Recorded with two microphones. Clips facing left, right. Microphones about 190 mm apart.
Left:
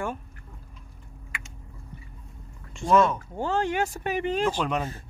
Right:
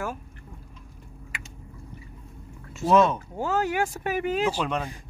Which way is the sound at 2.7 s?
5° right (ahead or behind).